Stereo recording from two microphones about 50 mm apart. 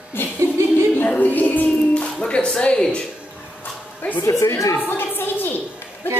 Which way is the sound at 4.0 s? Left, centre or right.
Left.